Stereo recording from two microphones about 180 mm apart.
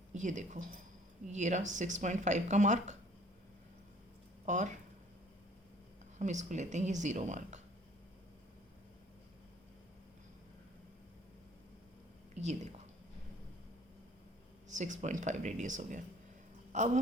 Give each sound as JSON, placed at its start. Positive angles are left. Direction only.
{"t": 0.1, "sound": "speech", "side_deg": -45}
{"t": 4.4, "sound": "speech", "side_deg": -40}
{"t": 6.1, "sound": "speech", "side_deg": -40}
{"t": 12.3, "sound": "a sound", "side_deg": -40}
{"t": 14.7, "sound": "speech", "side_deg": -40}